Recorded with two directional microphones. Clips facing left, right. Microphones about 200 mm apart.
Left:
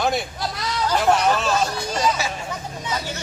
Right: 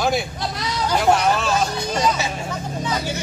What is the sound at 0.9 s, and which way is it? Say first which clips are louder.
Speech: right 1 dB; 10° right (ahead or behind).